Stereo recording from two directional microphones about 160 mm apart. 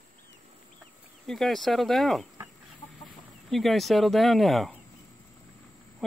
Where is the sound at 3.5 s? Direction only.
Centre (ahead or behind).